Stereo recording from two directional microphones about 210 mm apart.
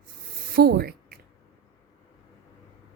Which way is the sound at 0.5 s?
45° right (ahead or behind).